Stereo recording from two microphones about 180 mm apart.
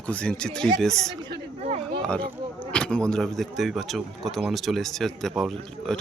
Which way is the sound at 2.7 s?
5° left (ahead or behind).